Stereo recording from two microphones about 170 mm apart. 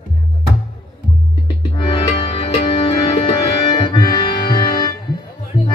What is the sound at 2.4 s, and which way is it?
Music, 30° left (ahead or behind).